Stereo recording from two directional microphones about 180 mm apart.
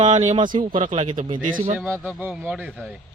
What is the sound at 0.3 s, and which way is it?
Speech, 25° right (ahead or behind).